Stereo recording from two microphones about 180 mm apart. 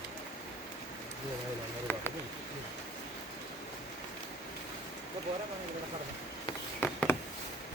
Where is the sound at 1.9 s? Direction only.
10° left (ahead or behind).